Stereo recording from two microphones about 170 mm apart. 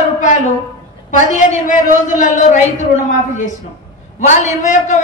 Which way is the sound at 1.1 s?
50° left (ahead or behind).